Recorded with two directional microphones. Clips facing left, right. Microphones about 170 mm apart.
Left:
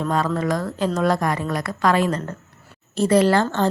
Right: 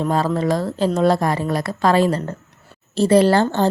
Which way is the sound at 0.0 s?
30° right (ahead or behind).